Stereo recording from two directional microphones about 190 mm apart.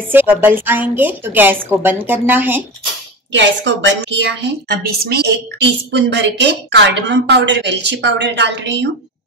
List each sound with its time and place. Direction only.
0.1 s a woman's voice: 10° right (ahead or behind)
3.3 s a woman's voice: 70° right (ahead or behind); by 5.3 s 55° right (ahead or behind)
5.9 s a woman's voice: 65° right (ahead or behind)